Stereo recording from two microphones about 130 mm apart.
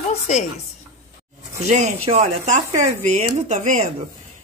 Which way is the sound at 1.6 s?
65° right (ahead or behind).